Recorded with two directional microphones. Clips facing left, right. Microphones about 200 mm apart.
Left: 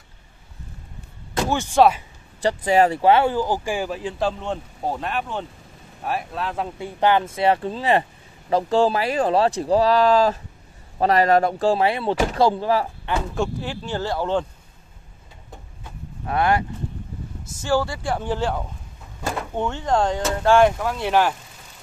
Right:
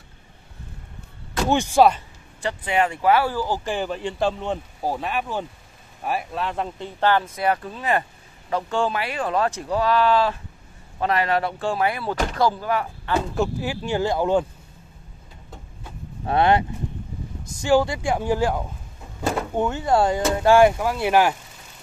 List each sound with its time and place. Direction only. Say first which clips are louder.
1.8 s speech: left 1 dB; 5° left (ahead or behind)
2.4 s speech: left 5 dB; 40° left (ahead or behind); by 6.9 s centre (ahead or behind)
7.0 s speech: left 2 dB; 15° left (ahead or behind)
13.3 s speech: right 1 dB; 5° right (ahead or behind)
16.3 s speech: right 2 dB; 25° right (ahead or behind)